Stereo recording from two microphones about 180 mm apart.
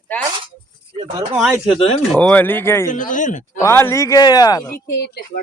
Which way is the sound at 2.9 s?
45° left (ahead or behind).